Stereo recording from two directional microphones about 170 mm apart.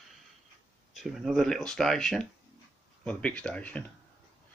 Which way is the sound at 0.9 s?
Centre (ahead or behind).